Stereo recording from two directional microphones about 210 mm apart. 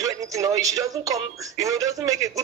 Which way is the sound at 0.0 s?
15° right (ahead or behind).